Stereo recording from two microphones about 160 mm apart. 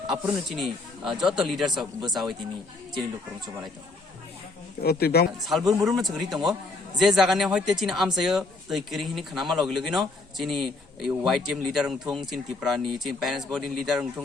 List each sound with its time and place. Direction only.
0.1 s speech: centre (ahead or behind)
4.8 s speech: 75° left (ahead or behind)
5.4 s speech: centre (ahead or behind)